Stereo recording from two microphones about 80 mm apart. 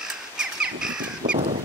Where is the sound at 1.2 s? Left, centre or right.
Right.